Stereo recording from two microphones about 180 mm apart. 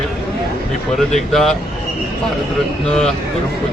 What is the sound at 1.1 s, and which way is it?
Speech, centre (ahead or behind).